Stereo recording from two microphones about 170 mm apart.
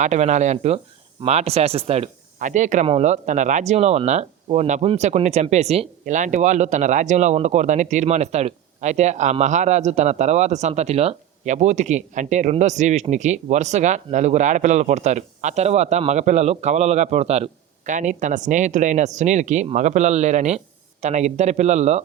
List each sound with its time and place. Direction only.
0.0 s speech: 45° right (ahead or behind)